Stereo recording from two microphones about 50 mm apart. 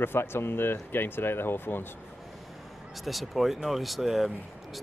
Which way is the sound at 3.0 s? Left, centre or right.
Centre.